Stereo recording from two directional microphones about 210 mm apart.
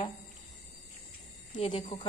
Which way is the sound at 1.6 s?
25° left (ahead or behind).